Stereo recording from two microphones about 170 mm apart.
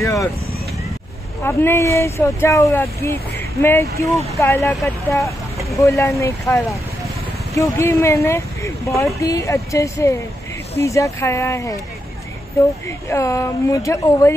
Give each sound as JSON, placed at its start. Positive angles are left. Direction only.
{"t": 0.0, "sound": "vehicle", "side_deg": 20}
{"t": 1.4, "sound": "speech", "side_deg": 15}
{"t": 12.8, "sound": "speech", "side_deg": 15}